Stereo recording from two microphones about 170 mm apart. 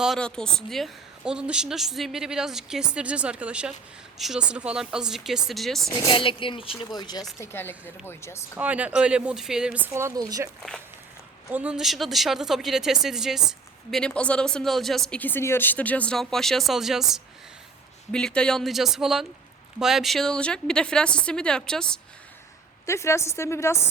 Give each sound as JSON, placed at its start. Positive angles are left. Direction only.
{"t": 0.0, "sound": "speech", "side_deg": 0}
{"t": 5.9, "sound": "speech", "side_deg": 25}
{"t": 7.3, "sound": "a woman's voice", "side_deg": 15}
{"t": 8.5, "sound": "speech", "side_deg": -10}
{"t": 11.5, "sound": "speech", "side_deg": -5}
{"t": 22.9, "sound": "a woman's voice", "side_deg": 15}